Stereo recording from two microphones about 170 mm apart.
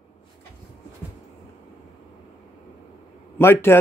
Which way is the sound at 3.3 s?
15° left (ahead or behind).